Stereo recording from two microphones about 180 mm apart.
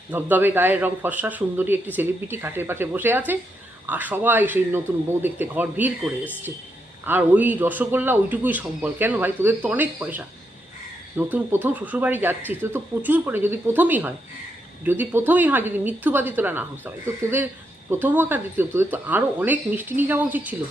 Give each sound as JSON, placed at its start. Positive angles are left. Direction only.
{"t": 0.1, "sound": "a man's voice", "side_deg": -10}
{"t": 7.0, "sound": "a man's voice", "side_deg": -10}